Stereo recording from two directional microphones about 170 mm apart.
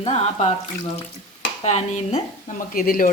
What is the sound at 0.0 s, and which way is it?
Speech, 40° left (ahead or behind).